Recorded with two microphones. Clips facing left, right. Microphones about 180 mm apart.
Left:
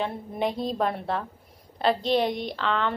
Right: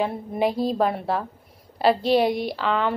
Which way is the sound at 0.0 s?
5° right (ahead or behind).